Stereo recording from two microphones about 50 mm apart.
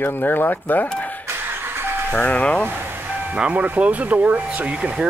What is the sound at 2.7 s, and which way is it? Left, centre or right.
Vehicle, right.